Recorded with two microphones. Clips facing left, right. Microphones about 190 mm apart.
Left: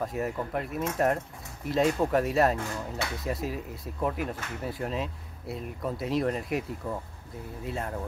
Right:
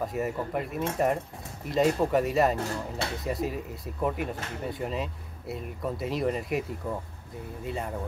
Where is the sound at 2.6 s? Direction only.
30° right (ahead or behind).